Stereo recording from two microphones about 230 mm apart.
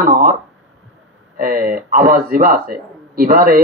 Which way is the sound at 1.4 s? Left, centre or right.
Right.